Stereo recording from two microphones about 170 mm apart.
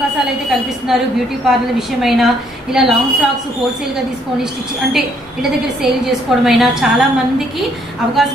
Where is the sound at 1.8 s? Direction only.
Centre (ahead or behind).